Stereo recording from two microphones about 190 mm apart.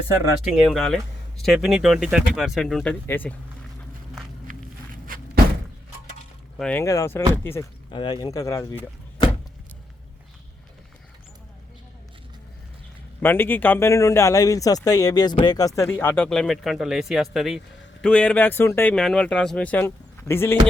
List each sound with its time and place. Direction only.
0.4 s speech: centre (ahead or behind)
4.5 s walk: 45° right (ahead or behind)
5.0 s thunk: 50° right (ahead or behind)
6.6 s speech: 10° left (ahead or behind)
7.9 s speech: 25° left (ahead or behind)
13.2 s speech: 10° left (ahead or behind)